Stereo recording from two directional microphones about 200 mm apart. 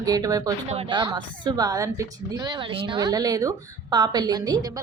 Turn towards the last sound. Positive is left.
turn(degrees=-20)  # may be behind; listen again after turning